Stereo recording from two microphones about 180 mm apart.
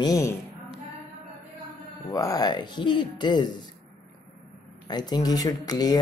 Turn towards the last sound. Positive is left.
turn(degrees=20)  # may be behind; listen again after turning